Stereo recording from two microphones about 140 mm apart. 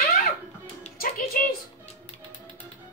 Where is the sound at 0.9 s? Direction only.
90° left.